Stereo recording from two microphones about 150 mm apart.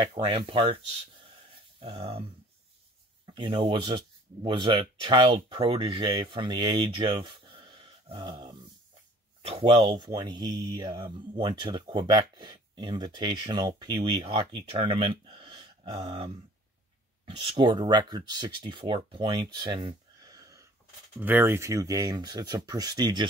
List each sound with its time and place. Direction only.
0.0 s speech: 40° right (ahead or behind)
1.5 s a sound: 35° right (ahead or behind)
3.3 s speech: 35° right (ahead or behind)
17.6 s speech: 30° right (ahead or behind)
21.2 s speech: 15° right (ahead or behind)